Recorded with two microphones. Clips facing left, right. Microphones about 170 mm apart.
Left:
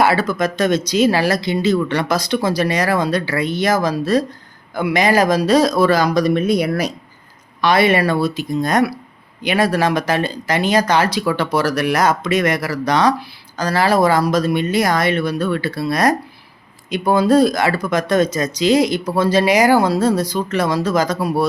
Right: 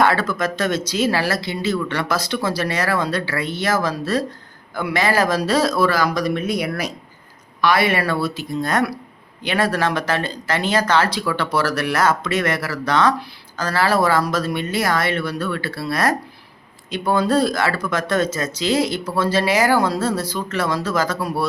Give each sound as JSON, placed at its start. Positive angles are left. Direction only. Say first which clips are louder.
{"t": 0.0, "sound": "speech", "louder": "left 2 dB", "side_deg": 10}
{"t": 6.6, "sound": "speech", "louder": "left 5 dB", "side_deg": 40}
{"t": 7.6, "sound": "speech", "louder": "left 4 dB", "side_deg": 20}